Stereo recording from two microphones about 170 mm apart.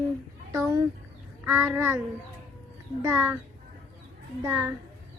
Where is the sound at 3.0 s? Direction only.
15° right (ahead or behind).